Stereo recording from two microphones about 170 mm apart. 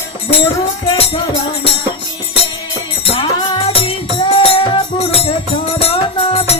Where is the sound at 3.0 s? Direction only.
35° left (ahead or behind).